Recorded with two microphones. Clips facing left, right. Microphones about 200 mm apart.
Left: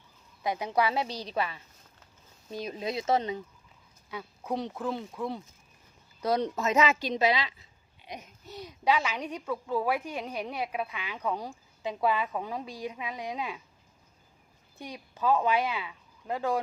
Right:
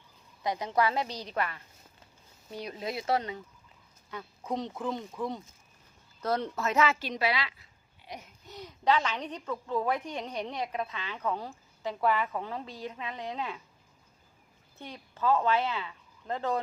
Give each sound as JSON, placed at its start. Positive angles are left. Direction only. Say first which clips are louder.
{"t": 0.4, "sound": "a woman's voice", "louder": "even", "side_deg": 10}
{"t": 2.6, "sound": "a woman's voice", "louder": "left 2 dB", "side_deg": 20}
{"t": 4.1, "sound": "speech", "louder": "left 1 dB", "side_deg": 5}
{"t": 6.2, "sound": "a woman's voice", "louder": "left 3 dB", "side_deg": 15}
{"t": 8.0, "sound": "a sound", "louder": "left 1 dB", "side_deg": 20}
{"t": 8.5, "sound": "a woman's voice", "louder": "even", "side_deg": 10}
{"t": 14.8, "sound": "speech", "louder": "left 1 dB", "side_deg": 15}